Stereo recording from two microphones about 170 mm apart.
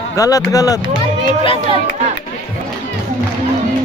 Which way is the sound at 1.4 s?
30° left (ahead or behind).